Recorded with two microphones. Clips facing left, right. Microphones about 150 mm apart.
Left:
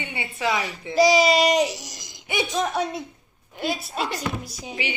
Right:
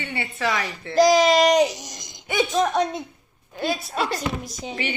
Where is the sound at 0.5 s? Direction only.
Centre (ahead or behind).